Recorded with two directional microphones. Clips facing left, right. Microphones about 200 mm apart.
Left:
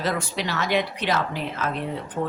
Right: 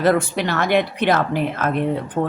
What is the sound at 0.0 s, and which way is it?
Speech, 55° right (ahead or behind).